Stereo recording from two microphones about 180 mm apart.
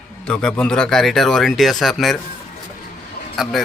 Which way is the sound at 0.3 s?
5° left (ahead or behind).